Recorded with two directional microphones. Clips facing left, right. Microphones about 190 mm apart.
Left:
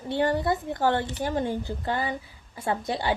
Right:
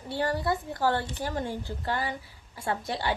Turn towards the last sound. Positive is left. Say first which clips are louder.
# left 3 dB
turn(degrees=20)  # may be behind; listen again after turning